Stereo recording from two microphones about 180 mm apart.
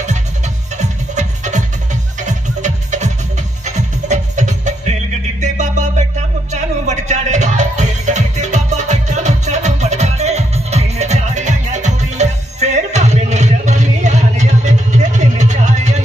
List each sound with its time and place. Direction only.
0.7 s music: 40° right (ahead or behind)